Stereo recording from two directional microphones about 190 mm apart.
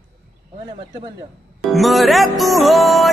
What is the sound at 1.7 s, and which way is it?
Music, centre (ahead or behind).